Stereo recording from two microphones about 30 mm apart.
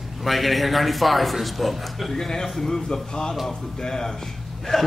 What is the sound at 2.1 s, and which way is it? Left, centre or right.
A man's voice, centre.